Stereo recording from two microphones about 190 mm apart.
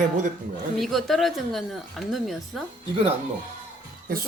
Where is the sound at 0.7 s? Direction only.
Centre (ahead or behind).